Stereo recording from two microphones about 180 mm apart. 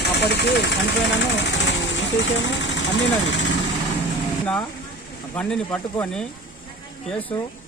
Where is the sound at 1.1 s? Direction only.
85° left.